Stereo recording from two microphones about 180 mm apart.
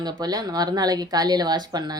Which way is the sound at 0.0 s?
20° right (ahead or behind).